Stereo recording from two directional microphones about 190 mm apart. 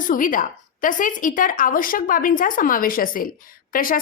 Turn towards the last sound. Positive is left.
turn(degrees=45)  # may be behind; listen again after turning